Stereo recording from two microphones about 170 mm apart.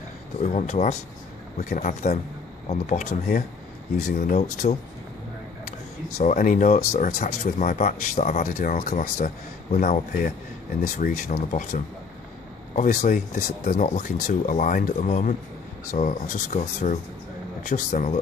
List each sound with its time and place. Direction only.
0.4 s speech: 45° left (ahead or behind)
6.1 s speech: 50° left (ahead or behind)